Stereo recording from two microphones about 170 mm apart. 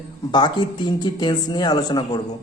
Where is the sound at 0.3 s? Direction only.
25° left (ahead or behind).